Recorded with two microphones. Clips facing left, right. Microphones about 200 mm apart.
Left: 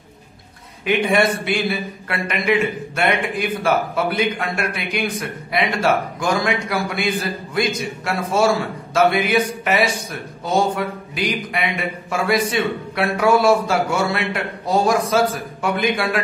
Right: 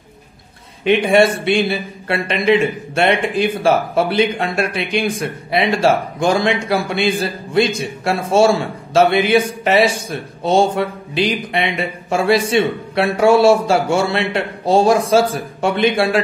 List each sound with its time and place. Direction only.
0.8 s a man's voice: 25° right (ahead or behind)